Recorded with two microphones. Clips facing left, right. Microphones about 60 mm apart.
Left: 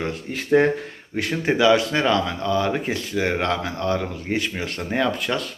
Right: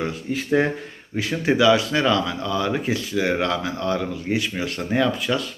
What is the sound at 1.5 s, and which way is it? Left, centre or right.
Speech, left.